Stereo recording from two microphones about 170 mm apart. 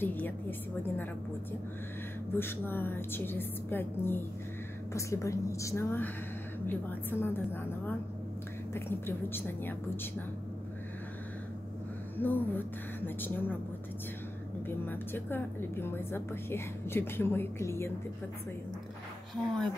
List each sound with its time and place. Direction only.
0.0 s a woman's voice: 10° left (ahead or behind)
2.3 s a woman's voice: 15° left (ahead or behind)
12.2 s a woman's voice: 10° left (ahead or behind)
14.9 s a woman's voice: 10° left (ahead or behind)
19.3 s speech: 5° left (ahead or behind)